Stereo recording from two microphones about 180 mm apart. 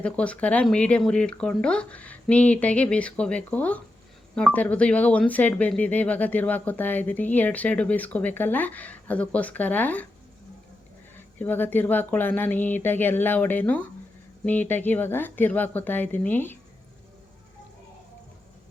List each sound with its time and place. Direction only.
0.0 s speech: 5° left (ahead or behind)
11.3 s speech: 10° left (ahead or behind)